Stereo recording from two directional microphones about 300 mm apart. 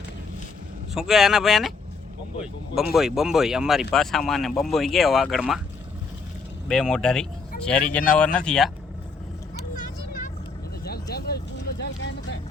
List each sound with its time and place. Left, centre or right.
0.9 s speech: centre
2.9 s speech: centre
6.7 s speech: centre
9.6 s vehicle: left